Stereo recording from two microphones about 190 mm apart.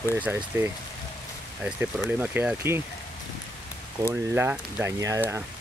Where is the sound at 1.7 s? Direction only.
5° right (ahead or behind).